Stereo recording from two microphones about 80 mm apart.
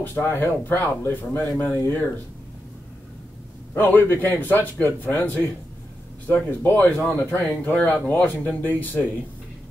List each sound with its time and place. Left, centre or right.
0.0 s a man's voice: left
3.7 s a man's voice: left